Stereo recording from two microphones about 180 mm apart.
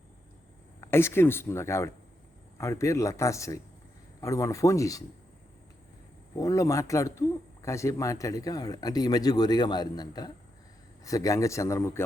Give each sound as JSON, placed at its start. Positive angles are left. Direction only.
{"t": 0.8, "sound": "speech", "side_deg": 15}
{"t": 6.3, "sound": "speech", "side_deg": 20}